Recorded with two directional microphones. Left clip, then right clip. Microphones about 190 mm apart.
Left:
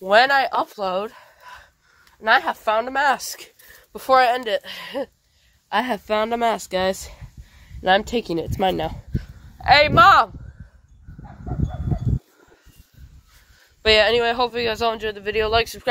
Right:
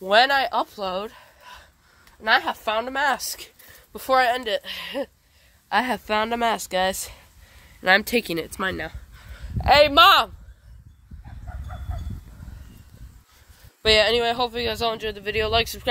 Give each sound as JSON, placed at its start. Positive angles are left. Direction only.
{"t": 0.0, "sound": "a woman's voice", "side_deg": -5}
{"t": 1.2, "sound": "a sound", "side_deg": -10}
{"t": 2.2, "sound": "a woman's voice", "side_deg": 0}
{"t": 4.4, "sound": "speech", "side_deg": -5}
{"t": 5.7, "sound": "speech", "side_deg": -30}
{"t": 7.9, "sound": "speech", "side_deg": -40}
{"t": 9.6, "sound": "a man's voice", "side_deg": -50}
{"t": 13.8, "sound": "speech", "side_deg": -20}